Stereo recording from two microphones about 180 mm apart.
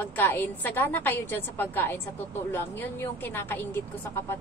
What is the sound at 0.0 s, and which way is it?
A woman's voice, 10° left (ahead or behind).